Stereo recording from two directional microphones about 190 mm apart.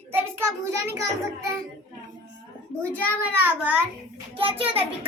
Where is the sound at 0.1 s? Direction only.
10° right (ahead or behind).